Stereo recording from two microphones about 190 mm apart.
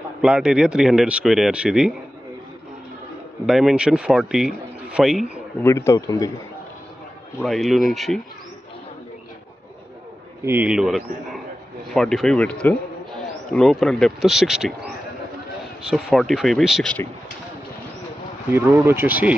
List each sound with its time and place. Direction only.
0.2 s speech: 5° right (ahead or behind)
3.4 s speech: centre (ahead or behind)
5.6 s speech: 15° left (ahead or behind)
7.3 s speech: centre (ahead or behind)
10.4 s a man's voice: 10° right (ahead or behind)
15.9 s speech: centre (ahead or behind)
18.5 s speech: 10° right (ahead or behind)